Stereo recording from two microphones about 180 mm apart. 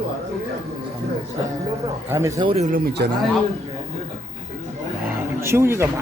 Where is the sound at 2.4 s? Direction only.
35° right (ahead or behind).